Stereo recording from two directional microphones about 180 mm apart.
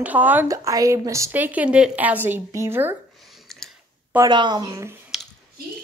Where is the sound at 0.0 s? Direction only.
10° right (ahead or behind).